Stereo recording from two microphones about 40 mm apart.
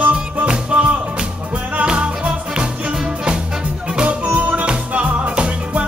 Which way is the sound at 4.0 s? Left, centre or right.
Right.